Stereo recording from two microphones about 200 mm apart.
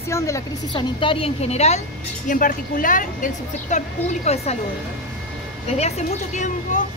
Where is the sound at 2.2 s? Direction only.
40° left (ahead or behind).